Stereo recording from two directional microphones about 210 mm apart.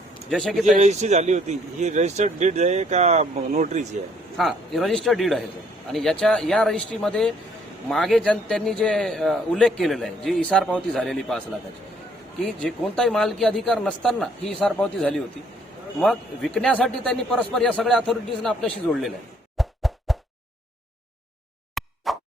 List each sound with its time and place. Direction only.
0.3 s a man's voice: centre (ahead or behind)
0.6 s speech: 35° right (ahead or behind)
4.4 s a man's voice: centre (ahead or behind)
12.5 s a man's voice: centre (ahead or behind)
19.5 s a sound: centre (ahead or behind)
21.8 s plop: centre (ahead or behind)